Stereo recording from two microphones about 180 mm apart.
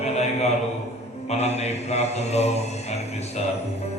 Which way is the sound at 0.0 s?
35° left (ahead or behind).